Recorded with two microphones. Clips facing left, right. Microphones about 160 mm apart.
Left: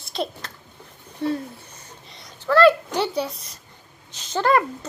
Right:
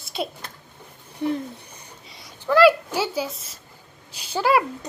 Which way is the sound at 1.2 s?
15° right (ahead or behind).